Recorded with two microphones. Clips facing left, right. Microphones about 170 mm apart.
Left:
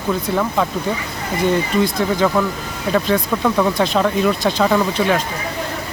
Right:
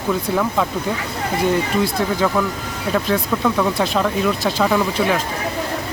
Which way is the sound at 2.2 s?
Centre (ahead or behind).